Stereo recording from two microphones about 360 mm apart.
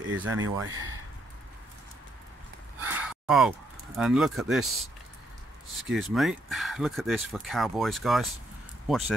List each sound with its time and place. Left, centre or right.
0.0 s speech: right
2.8 s a sound: centre
5.9 s speech: centre